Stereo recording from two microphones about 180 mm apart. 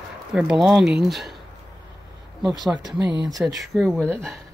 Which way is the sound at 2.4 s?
Centre (ahead or behind).